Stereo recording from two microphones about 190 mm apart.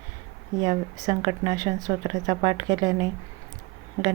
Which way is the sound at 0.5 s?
20° right (ahead or behind).